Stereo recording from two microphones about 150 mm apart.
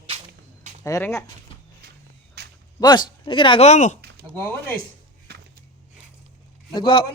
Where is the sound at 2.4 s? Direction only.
90° right.